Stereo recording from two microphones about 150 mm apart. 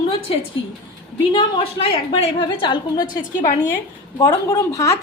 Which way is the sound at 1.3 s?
40° left (ahead or behind).